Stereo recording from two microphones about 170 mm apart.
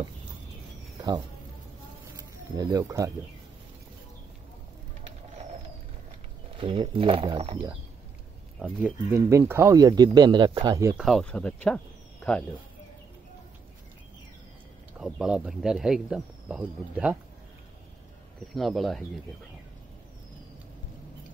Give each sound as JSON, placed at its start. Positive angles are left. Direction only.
{"t": 2.1, "sound": "a sound", "side_deg": -25}
{"t": 6.6, "sound": "speech", "side_deg": -30}
{"t": 8.5, "sound": "speech", "side_deg": -5}
{"t": 11.0, "sound": "speech", "side_deg": 0}
{"t": 15.0, "sound": "speech", "side_deg": -5}
{"t": 18.5, "sound": "speech", "side_deg": 0}